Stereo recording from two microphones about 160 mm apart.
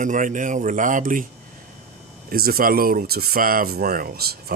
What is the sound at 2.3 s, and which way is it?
Speech, 70° right (ahead or behind).